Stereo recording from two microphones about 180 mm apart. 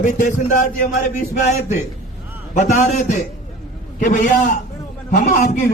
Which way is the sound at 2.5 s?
40° left (ahead or behind).